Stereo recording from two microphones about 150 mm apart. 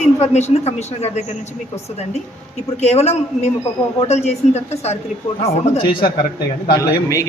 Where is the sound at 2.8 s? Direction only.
45° left (ahead or behind).